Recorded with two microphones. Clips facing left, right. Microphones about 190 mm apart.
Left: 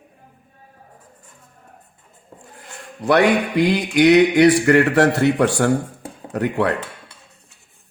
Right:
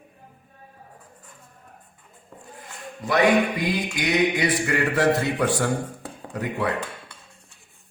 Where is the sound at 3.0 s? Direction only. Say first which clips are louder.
Left 3 dB; 75° left (ahead or behind).